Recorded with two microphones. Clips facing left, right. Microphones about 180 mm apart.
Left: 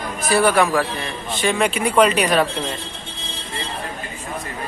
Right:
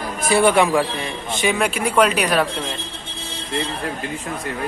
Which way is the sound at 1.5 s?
5° right (ahead or behind).